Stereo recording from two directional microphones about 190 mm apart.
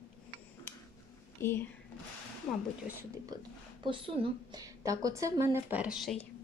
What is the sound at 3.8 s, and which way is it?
Speech, 25° right (ahead or behind).